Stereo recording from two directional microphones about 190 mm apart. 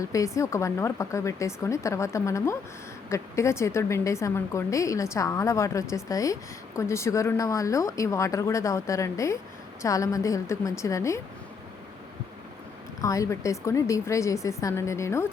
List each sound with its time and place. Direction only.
0.0 s a woman's voice: 15° left (ahead or behind)
13.0 s a woman's voice: 15° left (ahead or behind)